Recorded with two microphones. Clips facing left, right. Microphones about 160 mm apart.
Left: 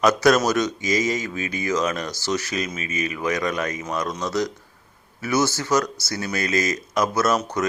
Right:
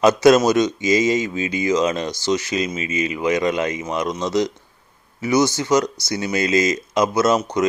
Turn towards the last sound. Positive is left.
turn(degrees=-20)  # may be behind; listen again after turning